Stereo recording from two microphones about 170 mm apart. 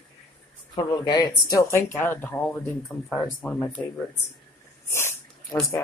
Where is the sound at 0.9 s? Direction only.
25° left (ahead or behind); by 3.6 s 5° left (ahead or behind).